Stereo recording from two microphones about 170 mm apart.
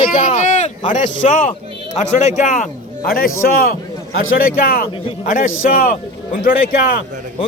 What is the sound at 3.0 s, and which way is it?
A man's voice, 55° left (ahead or behind).